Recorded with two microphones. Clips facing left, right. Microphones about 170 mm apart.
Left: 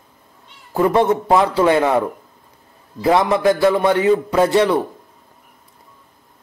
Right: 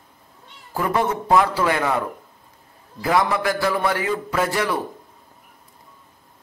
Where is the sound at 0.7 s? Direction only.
25° left (ahead or behind).